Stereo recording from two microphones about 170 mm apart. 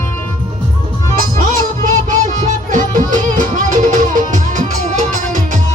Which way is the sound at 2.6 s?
50° right (ahead or behind).